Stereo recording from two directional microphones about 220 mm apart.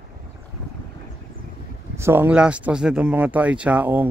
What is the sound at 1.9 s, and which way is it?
Speech, 10° right (ahead or behind).